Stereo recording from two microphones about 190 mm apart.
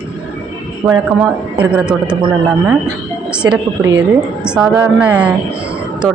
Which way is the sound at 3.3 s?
5° right (ahead or behind).